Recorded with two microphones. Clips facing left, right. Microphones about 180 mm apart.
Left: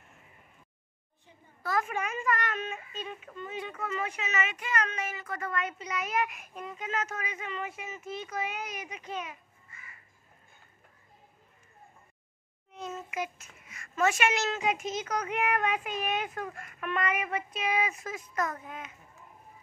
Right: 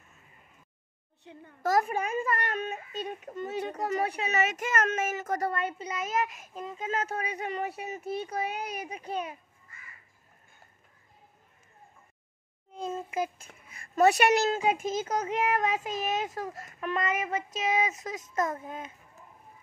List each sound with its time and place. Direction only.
1.2 s a sound: 70° right (ahead or behind)
1.6 s a child's voice: 40° right (ahead or behind)
12.7 s a child's voice: 30° right (ahead or behind)